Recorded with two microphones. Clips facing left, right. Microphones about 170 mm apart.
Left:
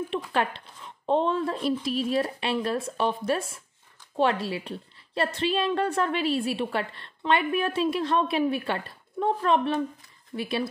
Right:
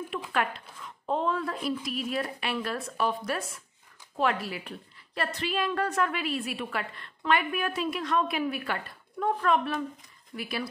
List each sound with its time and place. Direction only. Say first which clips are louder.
0.3 s a woman's voice: left 3 dB; 30° left (ahead or behind)